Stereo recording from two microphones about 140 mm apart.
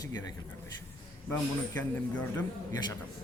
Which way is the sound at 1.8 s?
10° left (ahead or behind).